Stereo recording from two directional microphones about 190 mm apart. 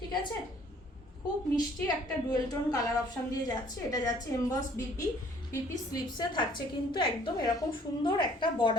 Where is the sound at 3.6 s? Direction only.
20° left (ahead or behind).